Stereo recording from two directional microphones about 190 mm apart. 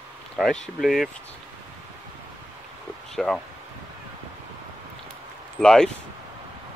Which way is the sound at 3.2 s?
Centre (ahead or behind).